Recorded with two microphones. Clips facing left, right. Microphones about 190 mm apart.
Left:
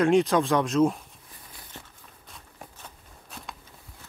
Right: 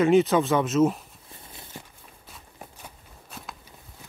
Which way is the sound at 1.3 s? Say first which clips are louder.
Right 6 dB; 25° right (ahead or behind).